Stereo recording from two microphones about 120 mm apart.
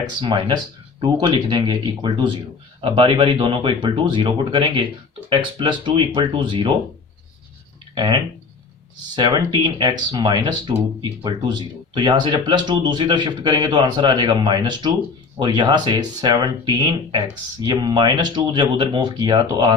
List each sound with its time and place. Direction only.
0.0 s speech: 40° right (ahead or behind)
7.9 s speech: 40° right (ahead or behind)